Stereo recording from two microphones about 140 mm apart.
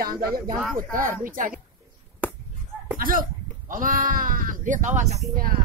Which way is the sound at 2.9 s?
85° right.